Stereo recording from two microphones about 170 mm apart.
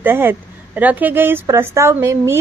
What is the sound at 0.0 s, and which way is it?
A woman's voice, 15° right (ahead or behind).